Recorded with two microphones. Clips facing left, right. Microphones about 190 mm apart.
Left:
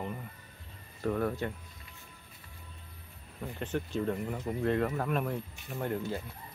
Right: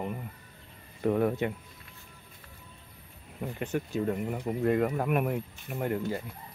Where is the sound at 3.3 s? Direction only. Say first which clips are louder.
Right 3 dB; 10° right (ahead or behind).